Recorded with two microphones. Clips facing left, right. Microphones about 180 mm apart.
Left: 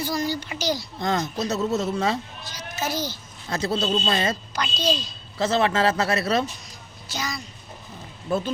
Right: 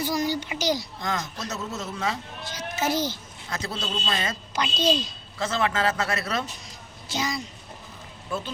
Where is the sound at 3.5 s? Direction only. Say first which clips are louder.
Left 8 dB; 30° left (ahead or behind).